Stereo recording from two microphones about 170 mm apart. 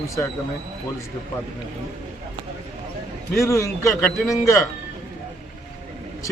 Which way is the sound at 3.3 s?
15° left (ahead or behind).